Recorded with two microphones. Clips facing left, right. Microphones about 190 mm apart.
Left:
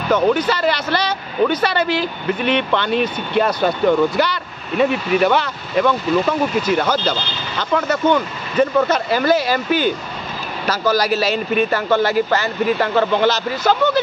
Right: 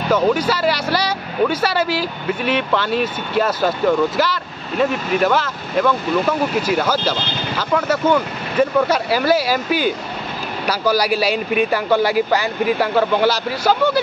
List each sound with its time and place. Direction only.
0.1 s speech: 10° right (ahead or behind)